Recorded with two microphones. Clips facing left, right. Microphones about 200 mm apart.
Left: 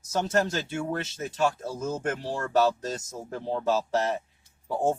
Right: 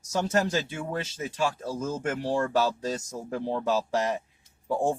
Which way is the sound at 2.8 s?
10° right (ahead or behind).